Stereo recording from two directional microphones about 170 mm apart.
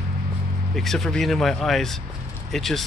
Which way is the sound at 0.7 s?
Centre (ahead or behind).